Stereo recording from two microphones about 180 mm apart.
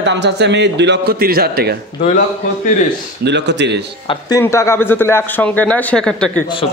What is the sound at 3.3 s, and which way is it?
Speech, 75° right (ahead or behind).